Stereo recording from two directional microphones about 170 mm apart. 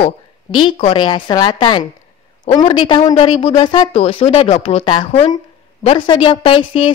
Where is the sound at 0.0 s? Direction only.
30° left (ahead or behind).